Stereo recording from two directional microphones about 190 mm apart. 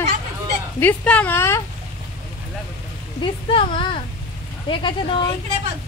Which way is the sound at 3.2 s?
30° left (ahead or behind).